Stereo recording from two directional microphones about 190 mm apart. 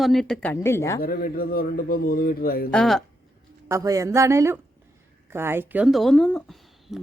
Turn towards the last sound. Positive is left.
turn(degrees=0)  # may be behind; listen again after turning